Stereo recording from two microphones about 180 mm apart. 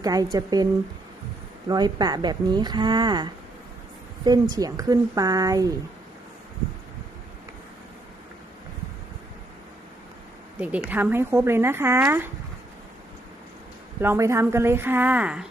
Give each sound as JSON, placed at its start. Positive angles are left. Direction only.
{"t": 0.0, "sound": "a woman's voice", "side_deg": -20}
{"t": 10.6, "sound": "speech", "side_deg": -10}
{"t": 14.0, "sound": "speech", "side_deg": -15}